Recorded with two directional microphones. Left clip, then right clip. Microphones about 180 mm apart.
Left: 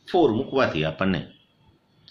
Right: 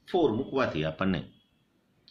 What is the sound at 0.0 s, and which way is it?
Speech, 5° right (ahead or behind).